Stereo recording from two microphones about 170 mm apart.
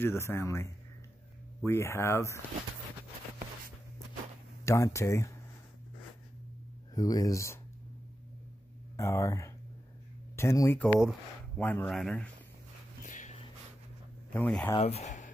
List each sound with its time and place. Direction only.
0.0 s speech: 15° left (ahead or behind)
4.6 s speech: 15° left (ahead or behind)
7.0 s speech: 20° left (ahead or behind)
8.9 s speech: 15° left (ahead or behind)
11.0 s speech: centre (ahead or behind)
11.6 s speech: 10° left (ahead or behind)
13.0 s dog: 45° left (ahead or behind)
14.3 s speech: 10° left (ahead or behind)
14.8 s speech: 40° left (ahead or behind)